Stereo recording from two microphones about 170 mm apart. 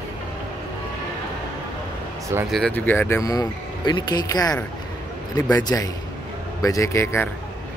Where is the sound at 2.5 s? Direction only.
5° left (ahead or behind).